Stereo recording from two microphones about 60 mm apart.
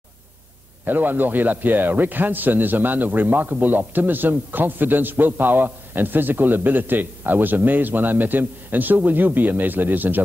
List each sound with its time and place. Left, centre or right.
0.8 s a man's voice: right